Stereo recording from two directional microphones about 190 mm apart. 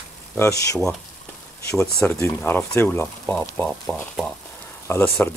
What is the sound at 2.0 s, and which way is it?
Speech, 10° left (ahead or behind).